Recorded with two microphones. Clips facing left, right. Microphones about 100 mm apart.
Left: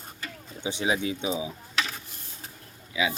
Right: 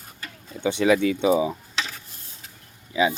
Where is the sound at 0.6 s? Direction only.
65° right (ahead or behind).